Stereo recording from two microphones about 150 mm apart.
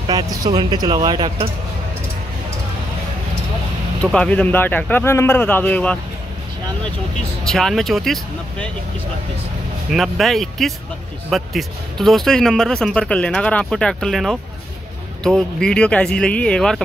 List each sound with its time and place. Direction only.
0.1 s speech: 25° right (ahead or behind)
4.1 s speech: 10° left (ahead or behind)
7.4 s speech: 5° left (ahead or behind)
9.8 s speech: centre (ahead or behind)